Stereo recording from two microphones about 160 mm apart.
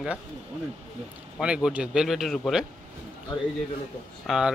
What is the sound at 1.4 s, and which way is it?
Speech, 5° right (ahead or behind).